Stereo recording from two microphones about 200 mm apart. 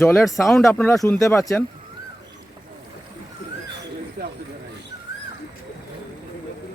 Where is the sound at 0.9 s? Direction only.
15° left (ahead or behind).